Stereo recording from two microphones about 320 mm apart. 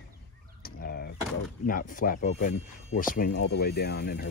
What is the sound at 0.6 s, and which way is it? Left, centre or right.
Crow, left.